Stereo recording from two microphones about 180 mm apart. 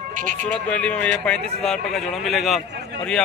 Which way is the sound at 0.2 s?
45° right (ahead or behind).